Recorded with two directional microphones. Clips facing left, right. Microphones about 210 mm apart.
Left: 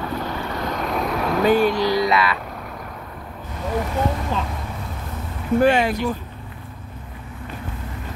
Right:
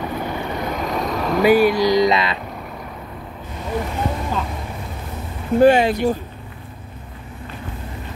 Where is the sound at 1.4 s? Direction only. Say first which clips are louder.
Right 4 dB; 10° right (ahead or behind).